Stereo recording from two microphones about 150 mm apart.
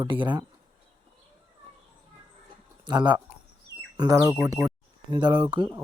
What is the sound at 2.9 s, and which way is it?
Speech, 30° right (ahead or behind).